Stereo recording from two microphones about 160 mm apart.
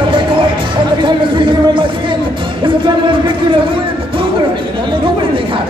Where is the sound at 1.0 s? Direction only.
30° right (ahead or behind).